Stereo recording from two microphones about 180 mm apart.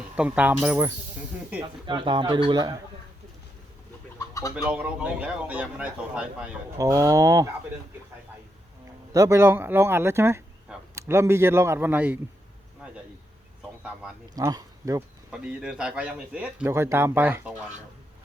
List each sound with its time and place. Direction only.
0.2 s speech: 10° right (ahead or behind)
1.9 s speech: 25° right (ahead or behind)
4.5 s speech: 5° right (ahead or behind)
6.7 s speech: 20° right (ahead or behind)
9.1 s speech: 15° right (ahead or behind)
14.3 s speech: 20° right (ahead or behind)
15.3 s speech: 5° right (ahead or behind)